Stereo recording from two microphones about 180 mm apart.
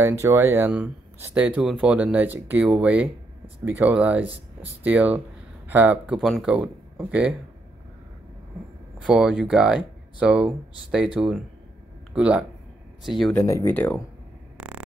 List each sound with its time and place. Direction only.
0.0 s speech: 15° right (ahead or behind)
9.0 s speech: 5° right (ahead or behind)
12.1 s speech: 5° right (ahead or behind)
13.3 s speech: 15° left (ahead or behind)
14.6 s a sound: 5° right (ahead or behind)